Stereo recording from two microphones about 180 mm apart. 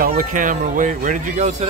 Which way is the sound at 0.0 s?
50° right (ahead or behind).